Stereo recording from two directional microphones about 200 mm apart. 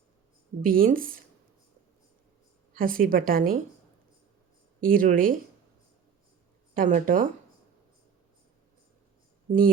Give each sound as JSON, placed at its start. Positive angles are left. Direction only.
{"t": 0.6, "sound": "a woman's voice", "side_deg": -45}
{"t": 2.7, "sound": "a woman's voice", "side_deg": -45}
{"t": 4.8, "sound": "a woman's voice", "side_deg": -45}
{"t": 6.7, "sound": "a woman's voice", "side_deg": -45}
{"t": 9.5, "sound": "a woman's voice", "side_deg": -45}